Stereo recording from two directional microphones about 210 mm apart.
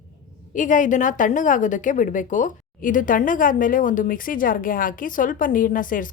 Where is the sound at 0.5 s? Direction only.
35° left (ahead or behind).